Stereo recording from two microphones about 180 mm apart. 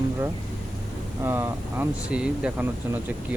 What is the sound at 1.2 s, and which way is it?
Speech, 15° right (ahead or behind).